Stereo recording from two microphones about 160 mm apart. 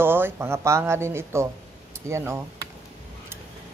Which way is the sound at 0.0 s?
15° right (ahead or behind).